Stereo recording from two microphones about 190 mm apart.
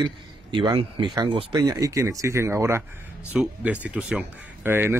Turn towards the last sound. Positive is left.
turn(degrees=-10)  # may be behind; listen again after turning